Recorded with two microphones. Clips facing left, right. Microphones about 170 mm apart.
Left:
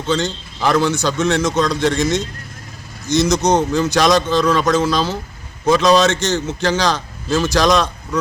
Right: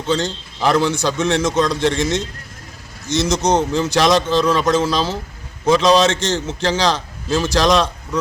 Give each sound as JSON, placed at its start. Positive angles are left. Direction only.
{"t": 0.1, "sound": "a man's voice", "side_deg": -30}